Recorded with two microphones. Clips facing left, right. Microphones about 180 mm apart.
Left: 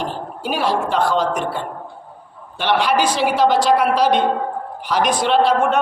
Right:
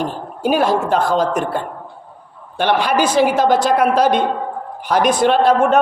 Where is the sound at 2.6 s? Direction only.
50° right (ahead or behind).